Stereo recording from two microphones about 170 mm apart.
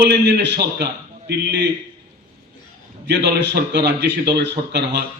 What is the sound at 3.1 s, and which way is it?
A man's voice, 85° right.